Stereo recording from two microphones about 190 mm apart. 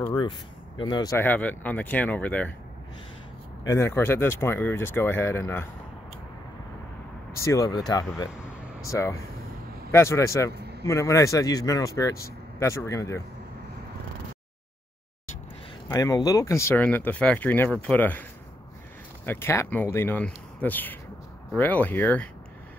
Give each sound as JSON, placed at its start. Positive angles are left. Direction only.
{"t": 0.7, "sound": "speech", "side_deg": 20}
{"t": 3.6, "sound": "speech", "side_deg": 15}
{"t": 7.3, "sound": "speech", "side_deg": 15}
{"t": 8.3, "sound": "vehicle", "side_deg": -5}
{"t": 8.9, "sound": "speech", "side_deg": 15}
{"t": 10.5, "sound": "a sound", "side_deg": -60}
{"t": 10.8, "sound": "speech", "side_deg": 15}
{"t": 15.9, "sound": "speech", "side_deg": 20}
{"t": 19.2, "sound": "speech", "side_deg": 10}